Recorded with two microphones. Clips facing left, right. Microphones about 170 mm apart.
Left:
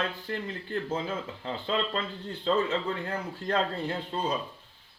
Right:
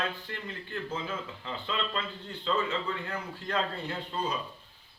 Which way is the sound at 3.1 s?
30° left (ahead or behind).